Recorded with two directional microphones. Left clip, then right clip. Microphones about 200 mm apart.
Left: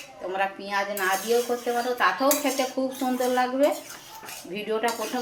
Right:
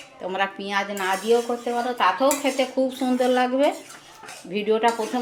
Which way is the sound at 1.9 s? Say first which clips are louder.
Right 4 dB; 35° right (ahead or behind).